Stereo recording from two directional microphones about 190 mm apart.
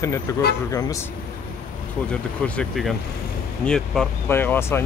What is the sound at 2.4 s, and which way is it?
Speech, 5° left (ahead or behind).